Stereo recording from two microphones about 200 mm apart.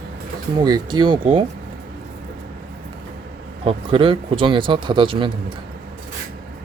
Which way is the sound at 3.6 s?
25° right (ahead or behind).